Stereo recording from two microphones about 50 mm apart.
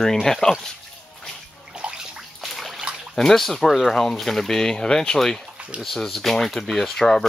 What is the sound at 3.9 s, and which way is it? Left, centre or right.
Speech, centre.